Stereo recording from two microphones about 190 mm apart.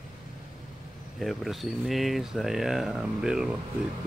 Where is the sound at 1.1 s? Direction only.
Centre (ahead or behind).